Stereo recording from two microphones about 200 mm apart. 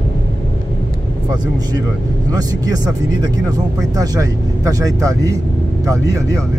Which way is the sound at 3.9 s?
20° right (ahead or behind).